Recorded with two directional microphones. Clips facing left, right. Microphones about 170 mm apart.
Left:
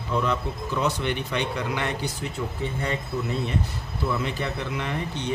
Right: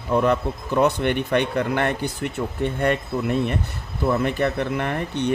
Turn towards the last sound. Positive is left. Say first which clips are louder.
# right 5 dB
turn(degrees=-60)  # may be behind; listen again after turning